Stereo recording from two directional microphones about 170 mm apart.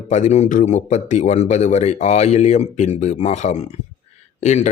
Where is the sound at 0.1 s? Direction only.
40° left (ahead or behind).